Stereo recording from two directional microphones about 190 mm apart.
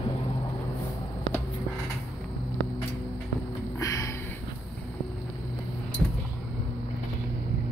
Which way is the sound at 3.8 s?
15° left (ahead or behind).